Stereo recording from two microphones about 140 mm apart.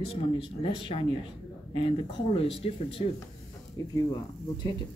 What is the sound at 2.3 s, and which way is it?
Speech, 45° left (ahead or behind).